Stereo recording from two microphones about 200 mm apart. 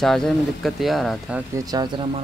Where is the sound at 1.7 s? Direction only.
20° right (ahead or behind).